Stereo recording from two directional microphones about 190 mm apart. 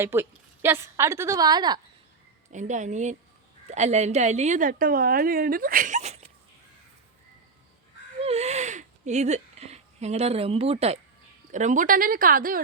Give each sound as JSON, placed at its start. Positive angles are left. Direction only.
{"t": 0.0, "sound": "a woman's voice", "side_deg": -10}
{"t": 2.5, "sound": "a woman's voice", "side_deg": -40}
{"t": 8.2, "sound": "a sound", "side_deg": -35}
{"t": 11.5, "sound": "speech", "side_deg": -40}